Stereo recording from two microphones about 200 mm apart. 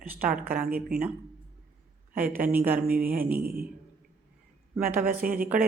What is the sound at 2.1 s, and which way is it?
Speech, 10° right (ahead or behind).